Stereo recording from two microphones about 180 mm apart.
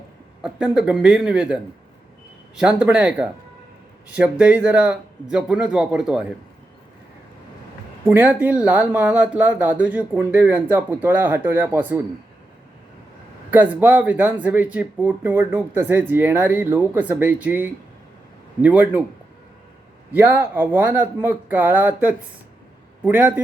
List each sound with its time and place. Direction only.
0.4 s speech: 5° right (ahead or behind)
8.0 s speech: 10° right (ahead or behind)
13.5 s speech: 10° right (ahead or behind)
20.1 s speech: 10° right (ahead or behind)